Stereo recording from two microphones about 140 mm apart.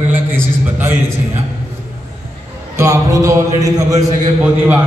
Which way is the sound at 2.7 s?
25° right (ahead or behind).